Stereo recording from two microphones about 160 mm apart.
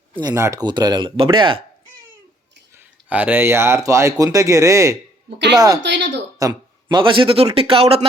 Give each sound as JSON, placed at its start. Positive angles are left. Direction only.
{"t": 0.2, "sound": "speech", "side_deg": -20}
{"t": 2.7, "sound": "speech", "side_deg": -10}
{"t": 5.8, "sound": "speech", "side_deg": -90}
{"t": 6.4, "sound": "a man's voice", "side_deg": -20}